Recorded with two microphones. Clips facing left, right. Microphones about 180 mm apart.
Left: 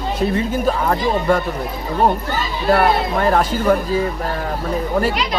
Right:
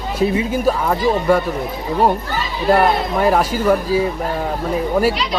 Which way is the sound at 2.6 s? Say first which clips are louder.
Right 1 dB; 5° right (ahead or behind).